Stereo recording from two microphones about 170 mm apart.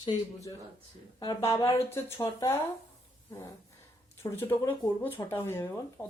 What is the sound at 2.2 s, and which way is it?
Speech, 15° left (ahead or behind).